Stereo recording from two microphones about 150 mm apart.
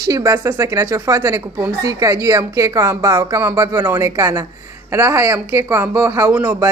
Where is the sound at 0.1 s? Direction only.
20° right (ahead or behind).